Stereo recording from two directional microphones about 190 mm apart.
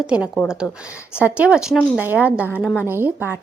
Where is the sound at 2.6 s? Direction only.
5° left (ahead or behind).